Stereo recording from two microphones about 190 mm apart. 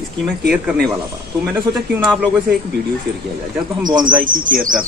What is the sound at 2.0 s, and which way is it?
Speech, 5° left (ahead or behind).